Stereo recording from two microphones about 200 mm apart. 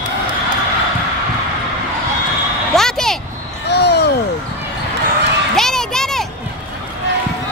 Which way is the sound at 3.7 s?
55° left (ahead or behind).